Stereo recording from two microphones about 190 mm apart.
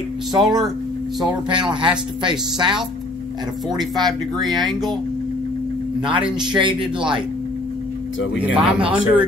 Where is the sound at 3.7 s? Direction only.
20° right (ahead or behind).